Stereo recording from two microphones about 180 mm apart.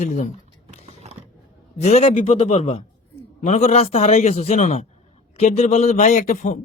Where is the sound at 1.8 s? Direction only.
35° left (ahead or behind).